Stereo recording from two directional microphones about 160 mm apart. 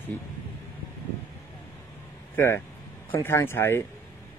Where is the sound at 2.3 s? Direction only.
15° left (ahead or behind).